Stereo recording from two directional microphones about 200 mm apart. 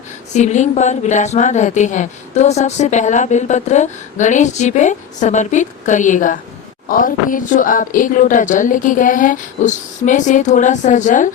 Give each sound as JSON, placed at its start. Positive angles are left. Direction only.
{"t": 0.3, "sound": "a woman's voice", "side_deg": 35}